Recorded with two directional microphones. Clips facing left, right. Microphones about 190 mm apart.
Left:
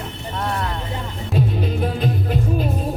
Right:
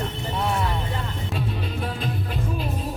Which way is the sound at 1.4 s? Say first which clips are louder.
Left 9 dB; 45° left (ahead or behind).